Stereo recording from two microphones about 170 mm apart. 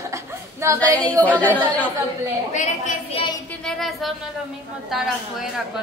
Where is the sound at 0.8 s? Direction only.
10° left (ahead or behind).